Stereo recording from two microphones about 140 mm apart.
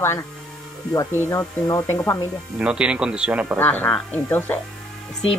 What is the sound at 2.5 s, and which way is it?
Speech, 10° right (ahead or behind).